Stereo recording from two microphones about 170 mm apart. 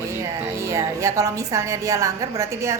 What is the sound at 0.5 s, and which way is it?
A woman's voice, 15° right (ahead or behind).